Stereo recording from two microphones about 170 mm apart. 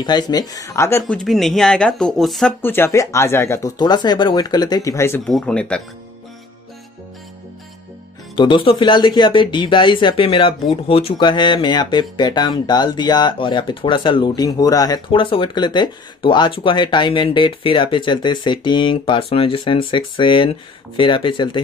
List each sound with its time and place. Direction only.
0.0 s speech: 25° left (ahead or behind)
1.0 s speech: 5° left (ahead or behind)
2.6 s speech: 15° left (ahead or behind)
5.2 s speech: 5° left (ahead or behind)
8.4 s speech: 30° left (ahead or behind)